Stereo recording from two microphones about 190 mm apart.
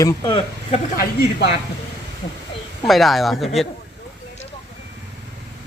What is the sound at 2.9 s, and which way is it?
Speech, centre (ahead or behind).